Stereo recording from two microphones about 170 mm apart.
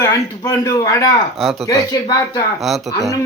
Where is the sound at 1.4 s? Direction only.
Centre (ahead or behind).